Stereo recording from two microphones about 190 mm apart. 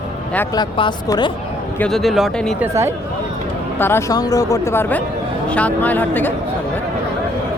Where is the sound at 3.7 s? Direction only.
10° left (ahead or behind).